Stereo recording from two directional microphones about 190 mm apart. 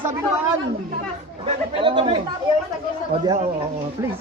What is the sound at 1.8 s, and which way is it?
Speech, 25° right (ahead or behind).